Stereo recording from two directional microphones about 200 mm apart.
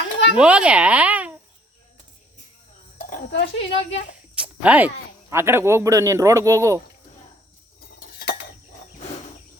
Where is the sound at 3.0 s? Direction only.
40° left (ahead or behind).